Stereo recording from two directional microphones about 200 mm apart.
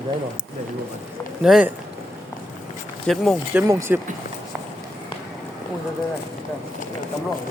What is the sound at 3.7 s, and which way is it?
Speech, 15° right (ahead or behind).